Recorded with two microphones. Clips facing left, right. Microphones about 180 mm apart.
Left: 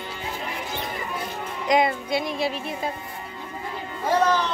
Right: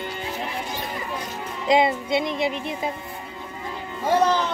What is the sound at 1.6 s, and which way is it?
Speech, 25° right (ahead or behind).